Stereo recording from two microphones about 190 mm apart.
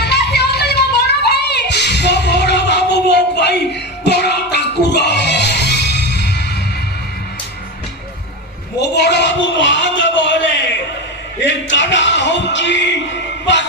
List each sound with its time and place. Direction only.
0.0 s music: 60° left (ahead or behind)
8.8 s a sound: 60° left (ahead or behind)
11.4 s music: 70° left (ahead or behind)